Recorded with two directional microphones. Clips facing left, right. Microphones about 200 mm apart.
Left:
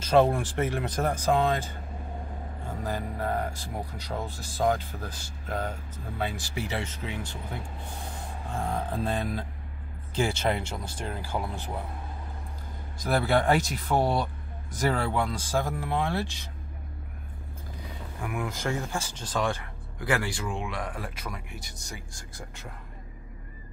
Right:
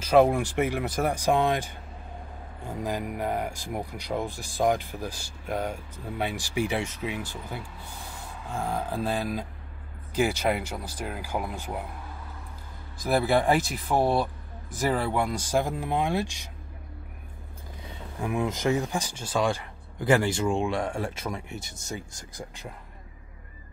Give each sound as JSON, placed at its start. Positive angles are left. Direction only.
{"t": 0.0, "sound": "speech", "side_deg": -10}
{"t": 2.8, "sound": "speech", "side_deg": -15}
{"t": 8.6, "sound": "speech", "side_deg": -5}
{"t": 13.0, "sound": "speech", "side_deg": -5}
{"t": 17.8, "sound": "speech", "side_deg": -25}
{"t": 20.0, "sound": "speech", "side_deg": -25}